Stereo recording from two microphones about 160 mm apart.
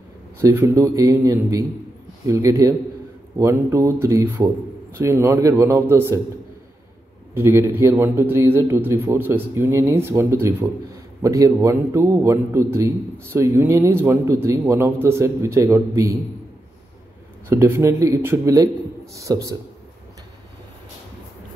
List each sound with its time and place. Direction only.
0.4 s a man's voice: 15° right (ahead or behind)
7.3 s a man's voice: 15° right (ahead or behind)
17.5 s a man's voice: 15° right (ahead or behind)